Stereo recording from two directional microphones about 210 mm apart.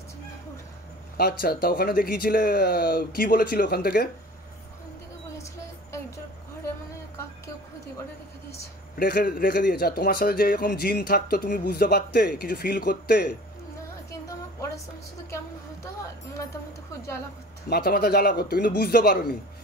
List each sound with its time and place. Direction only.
1.1 s a man's voice: 45° left (ahead or behind)
8.9 s a man's voice: 45° left (ahead or behind)
17.6 s a man's voice: 45° left (ahead or behind)